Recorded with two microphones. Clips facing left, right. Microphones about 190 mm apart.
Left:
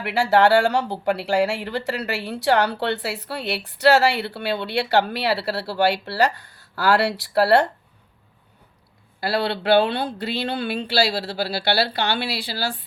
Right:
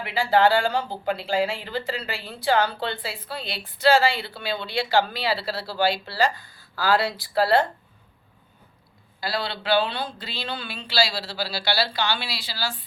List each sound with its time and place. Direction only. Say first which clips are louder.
0.0 s speech: left 2 dB; 70° left (ahead or behind)
9.2 s speech: left 6 dB; 65° left (ahead or behind)